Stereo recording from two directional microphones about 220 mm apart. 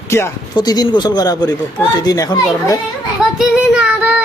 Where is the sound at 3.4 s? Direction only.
5° right (ahead or behind).